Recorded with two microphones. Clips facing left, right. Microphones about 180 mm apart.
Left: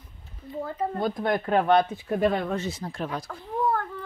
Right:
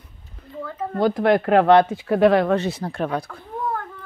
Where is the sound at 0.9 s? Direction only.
80° right; by 3.4 s 60° right (ahead or behind).